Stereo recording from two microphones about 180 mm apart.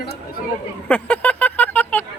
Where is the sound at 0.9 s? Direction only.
10° left (ahead or behind).